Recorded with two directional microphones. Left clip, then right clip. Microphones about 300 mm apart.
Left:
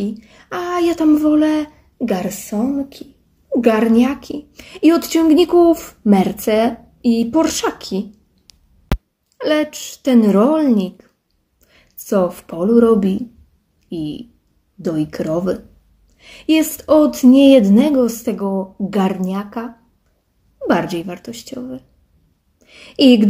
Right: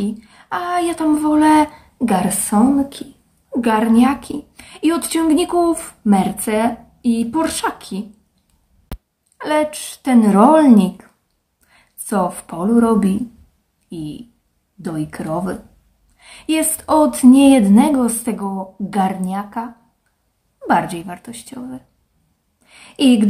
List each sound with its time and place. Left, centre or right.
0.0 s speech: centre
3.6 s speech: centre
8.9 s a sound: centre
9.4 s speech: centre
9.7 s speech: right
10.0 s speech: centre
22.6 s a sound: centre